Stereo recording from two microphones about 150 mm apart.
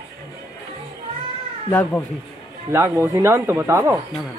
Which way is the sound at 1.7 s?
10° left (ahead or behind).